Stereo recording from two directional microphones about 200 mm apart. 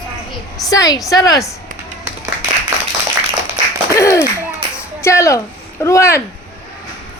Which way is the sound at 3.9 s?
15° left (ahead or behind).